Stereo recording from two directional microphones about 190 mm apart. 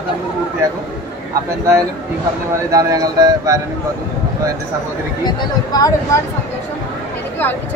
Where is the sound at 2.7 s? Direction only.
20° right (ahead or behind).